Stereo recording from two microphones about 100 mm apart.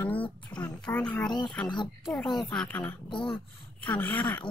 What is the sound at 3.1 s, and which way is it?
Speech, 55° left (ahead or behind).